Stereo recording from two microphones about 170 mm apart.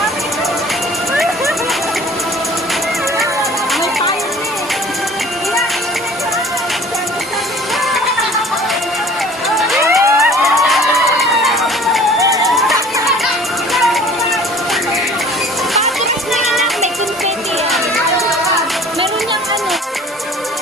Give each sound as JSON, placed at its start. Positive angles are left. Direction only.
{"t": 9.9, "sound": "music", "side_deg": 0}
{"t": 12.4, "sound": "a sound", "side_deg": 0}
{"t": 16.4, "sound": "music", "side_deg": 0}